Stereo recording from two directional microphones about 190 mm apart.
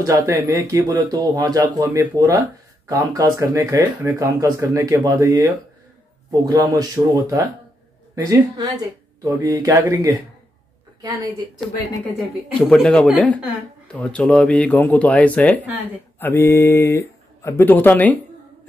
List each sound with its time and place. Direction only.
0.0 s a woman's voice: 15° right (ahead or behind)
12.5 s speech: 5° left (ahead or behind)